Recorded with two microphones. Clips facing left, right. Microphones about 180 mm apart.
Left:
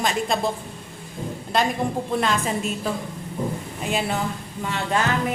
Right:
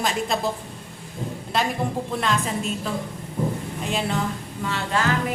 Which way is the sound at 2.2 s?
Centre (ahead or behind).